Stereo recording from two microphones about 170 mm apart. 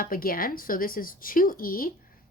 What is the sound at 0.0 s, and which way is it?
Speech, 55° left (ahead or behind).